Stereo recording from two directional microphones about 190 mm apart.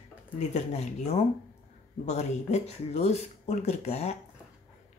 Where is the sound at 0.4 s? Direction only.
35° left (ahead or behind).